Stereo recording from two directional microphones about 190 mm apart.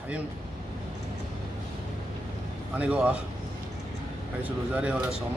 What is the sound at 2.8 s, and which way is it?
Speech, 5° right (ahead or behind).